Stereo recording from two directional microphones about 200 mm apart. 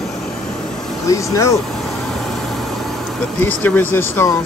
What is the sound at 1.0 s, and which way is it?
Speech, 15° left (ahead or behind).